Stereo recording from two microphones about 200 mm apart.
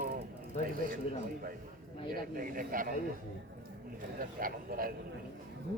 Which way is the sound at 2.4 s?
45° right (ahead or behind).